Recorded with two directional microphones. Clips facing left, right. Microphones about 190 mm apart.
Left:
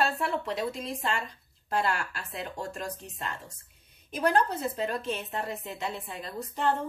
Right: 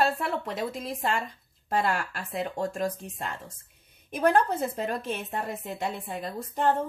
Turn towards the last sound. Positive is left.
turn(degrees=-50)  # may be behind; listen again after turning